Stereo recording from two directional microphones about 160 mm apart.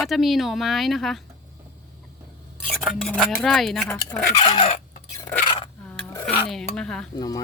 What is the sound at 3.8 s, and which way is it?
Speech, 10° left (ahead or behind).